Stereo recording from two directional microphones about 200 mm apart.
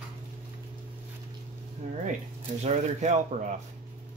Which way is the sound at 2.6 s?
35° right (ahead or behind).